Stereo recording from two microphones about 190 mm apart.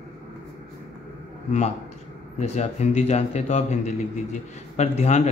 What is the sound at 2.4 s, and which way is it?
A man's voice, 35° left (ahead or behind).